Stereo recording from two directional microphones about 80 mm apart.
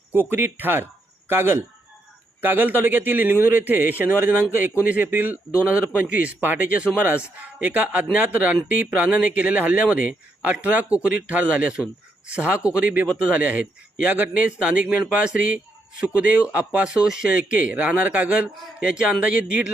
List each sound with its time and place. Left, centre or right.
0.1 s a man's voice: right